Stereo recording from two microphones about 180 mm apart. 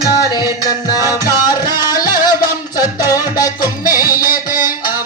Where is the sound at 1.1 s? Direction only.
20° left (ahead or behind).